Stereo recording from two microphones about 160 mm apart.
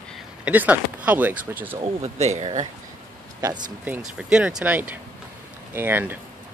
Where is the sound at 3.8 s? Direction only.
10° right (ahead or behind).